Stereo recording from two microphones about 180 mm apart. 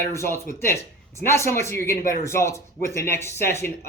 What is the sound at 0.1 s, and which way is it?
Speech, 15° left (ahead or behind).